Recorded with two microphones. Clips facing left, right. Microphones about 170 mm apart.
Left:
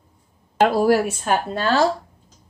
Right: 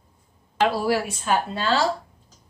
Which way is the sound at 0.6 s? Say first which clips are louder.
Left 5 dB; 50° left (ahead or behind).